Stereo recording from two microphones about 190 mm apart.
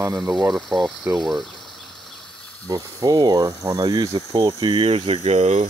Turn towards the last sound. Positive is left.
turn(degrees=-35)  # may be behind; listen again after turning